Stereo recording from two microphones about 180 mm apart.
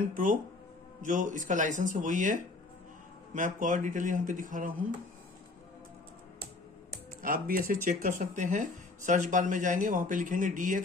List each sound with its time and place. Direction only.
0.1 s speech: 45° right (ahead or behind)
7.2 s speech: 50° right (ahead or behind)